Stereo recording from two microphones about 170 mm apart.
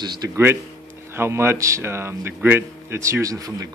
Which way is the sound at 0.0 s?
25° right (ahead or behind).